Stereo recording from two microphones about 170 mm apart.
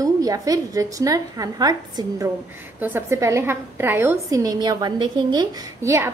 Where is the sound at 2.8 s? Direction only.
10° right (ahead or behind).